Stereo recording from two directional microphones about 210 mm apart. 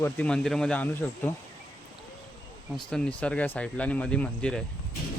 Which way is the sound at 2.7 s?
5° left (ahead or behind).